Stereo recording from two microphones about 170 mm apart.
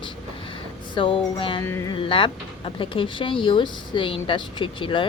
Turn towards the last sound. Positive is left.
turn(degrees=30)  # may be behind; listen again after turning